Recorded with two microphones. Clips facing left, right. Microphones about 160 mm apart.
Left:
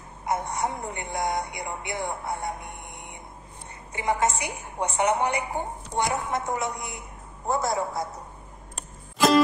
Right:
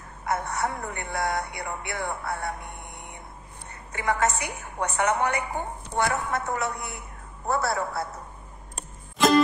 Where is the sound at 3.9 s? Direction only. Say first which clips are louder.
Even; 20° left (ahead or behind).